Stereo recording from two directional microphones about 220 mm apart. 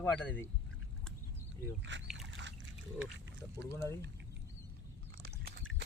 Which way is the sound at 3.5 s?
15° left (ahead or behind).